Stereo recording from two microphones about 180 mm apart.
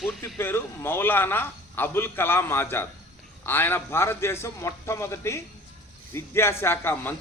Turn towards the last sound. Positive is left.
turn(degrees=10)  # may be behind; listen again after turning